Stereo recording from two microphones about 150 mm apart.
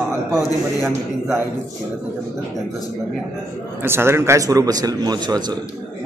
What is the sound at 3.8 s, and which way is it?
A man's voice, 15° right (ahead or behind).